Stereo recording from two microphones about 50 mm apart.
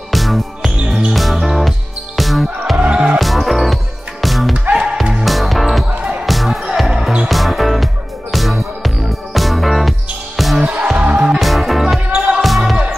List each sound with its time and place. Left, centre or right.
0.1 s music: centre
2.1 s basketball bounce: centre
2.8 s music: right
3.2 s music: centre
7.2 s music: centre
10.6 s music: right
11.3 s music: centre
12.4 s basketball bounce: centre